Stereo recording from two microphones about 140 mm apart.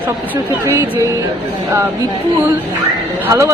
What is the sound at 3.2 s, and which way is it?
Speech, 20° right (ahead or behind).